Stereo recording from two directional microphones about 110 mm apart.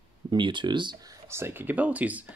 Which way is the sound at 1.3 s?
20° right (ahead or behind).